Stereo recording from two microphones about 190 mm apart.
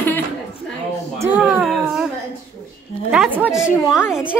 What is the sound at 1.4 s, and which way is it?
Speech, 5° right (ahead or behind).